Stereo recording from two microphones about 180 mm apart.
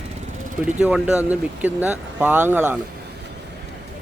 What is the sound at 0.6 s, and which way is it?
Speech, 5° right (ahead or behind).